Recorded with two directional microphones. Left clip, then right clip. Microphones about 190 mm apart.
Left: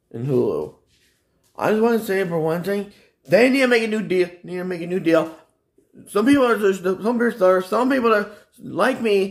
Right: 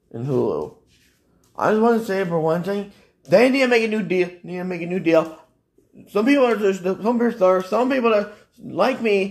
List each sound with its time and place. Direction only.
0.1 s speech: 10° left (ahead or behind)